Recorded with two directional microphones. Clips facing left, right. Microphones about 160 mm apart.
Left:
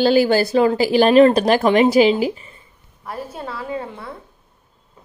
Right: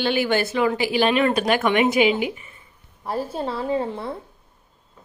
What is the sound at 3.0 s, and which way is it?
A woman's voice, 30° right (ahead or behind).